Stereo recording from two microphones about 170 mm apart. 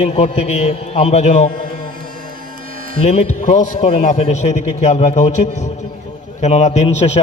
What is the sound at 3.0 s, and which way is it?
A man's voice, 40° left (ahead or behind).